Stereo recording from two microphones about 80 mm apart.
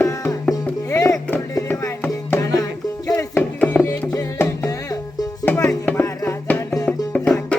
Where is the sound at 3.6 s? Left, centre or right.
Left.